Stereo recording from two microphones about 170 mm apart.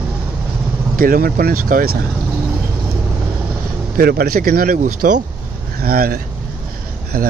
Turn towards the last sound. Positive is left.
turn(degrees=-55)  # may be behind; listen again after turning